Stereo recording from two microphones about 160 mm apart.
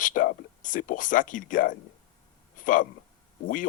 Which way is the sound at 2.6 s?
55° left (ahead or behind).